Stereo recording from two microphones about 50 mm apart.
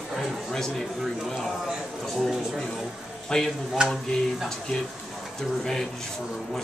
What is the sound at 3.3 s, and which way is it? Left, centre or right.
Speech, centre.